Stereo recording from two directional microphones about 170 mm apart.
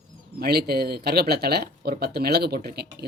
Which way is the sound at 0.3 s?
65° right (ahead or behind).